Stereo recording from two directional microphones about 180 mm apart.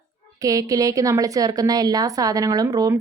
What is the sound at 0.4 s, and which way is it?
A woman's voice, 20° right (ahead or behind).